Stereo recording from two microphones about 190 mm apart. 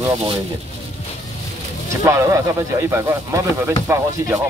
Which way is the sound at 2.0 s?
15° right (ahead or behind).